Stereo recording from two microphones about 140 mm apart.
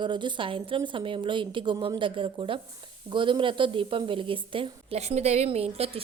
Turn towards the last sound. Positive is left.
turn(degrees=-45)  # may be behind; listen again after turning